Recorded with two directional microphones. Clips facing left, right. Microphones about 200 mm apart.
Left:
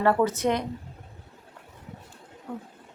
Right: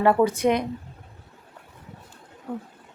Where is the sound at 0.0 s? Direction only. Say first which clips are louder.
Right 3 dB; 15° right (ahead or behind).